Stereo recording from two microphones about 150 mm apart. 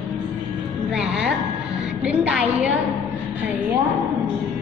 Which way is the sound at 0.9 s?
5° right (ahead or behind).